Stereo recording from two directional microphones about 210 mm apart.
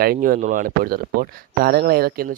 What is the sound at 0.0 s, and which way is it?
Speech, 45° right (ahead or behind).